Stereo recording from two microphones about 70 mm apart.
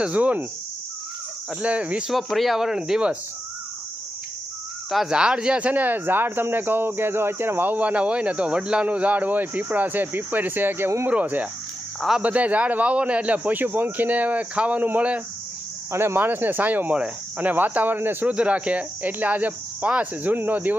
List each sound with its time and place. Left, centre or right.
0.0 s speech: centre
1.6 s speech: centre
2.0 s speech: centre
4.9 s speech: centre; by 11.1 s right
11.1 s speech: right
15.9 s speech: right
18.3 s speech: centre